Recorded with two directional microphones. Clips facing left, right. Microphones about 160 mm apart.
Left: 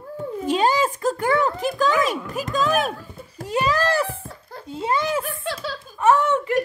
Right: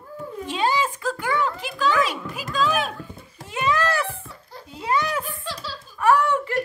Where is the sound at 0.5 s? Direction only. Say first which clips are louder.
Left 4 dB; 40° left (ahead or behind).